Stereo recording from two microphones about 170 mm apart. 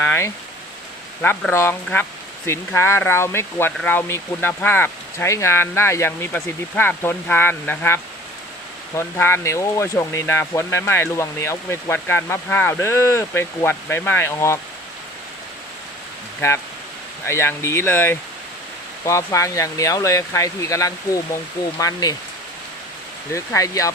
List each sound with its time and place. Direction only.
0.0 s a sound: 15° left (ahead or behind)
1.2 s speech: 10° left (ahead or behind)
17.2 s speech: 15° left (ahead or behind)
23.3 s speech: 15° left (ahead or behind)